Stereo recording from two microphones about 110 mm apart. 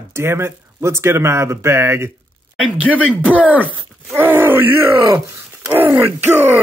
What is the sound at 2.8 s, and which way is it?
Speech, 10° right (ahead or behind).